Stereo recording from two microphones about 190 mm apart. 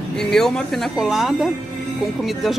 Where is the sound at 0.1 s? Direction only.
5° left (ahead or behind).